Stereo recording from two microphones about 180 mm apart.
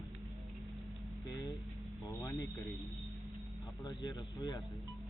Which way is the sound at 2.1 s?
15° left (ahead or behind).